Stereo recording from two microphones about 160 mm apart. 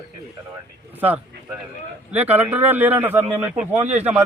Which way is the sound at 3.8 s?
45° right (ahead or behind).